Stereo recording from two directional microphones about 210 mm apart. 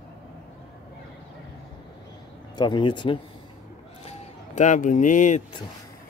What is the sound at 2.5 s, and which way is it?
Speech, 20° left (ahead or behind).